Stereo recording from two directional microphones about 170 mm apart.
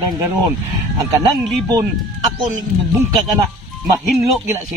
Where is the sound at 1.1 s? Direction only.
20° right (ahead or behind).